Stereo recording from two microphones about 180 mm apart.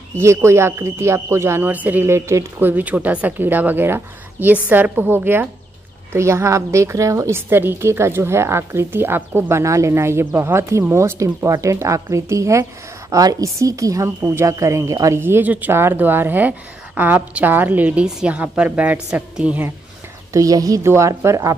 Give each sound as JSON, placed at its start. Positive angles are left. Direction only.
{"t": 0.2, "sound": "a woman's voice", "side_deg": -15}
{"t": 20.3, "sound": "a woman's voice", "side_deg": -20}